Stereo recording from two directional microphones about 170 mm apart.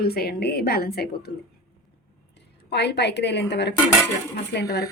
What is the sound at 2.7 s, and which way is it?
A woman's voice, 90° left.